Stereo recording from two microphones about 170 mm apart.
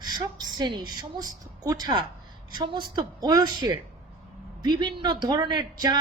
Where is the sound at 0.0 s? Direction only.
25° right (ahead or behind).